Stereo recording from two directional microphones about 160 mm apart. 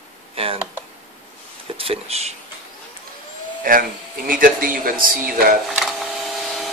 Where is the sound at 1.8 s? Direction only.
40° right (ahead or behind).